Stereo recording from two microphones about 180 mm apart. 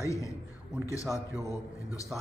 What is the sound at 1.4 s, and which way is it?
Speech, 20° left (ahead or behind).